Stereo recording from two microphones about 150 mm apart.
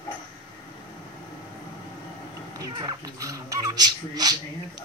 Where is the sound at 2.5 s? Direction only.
25° right (ahead or behind).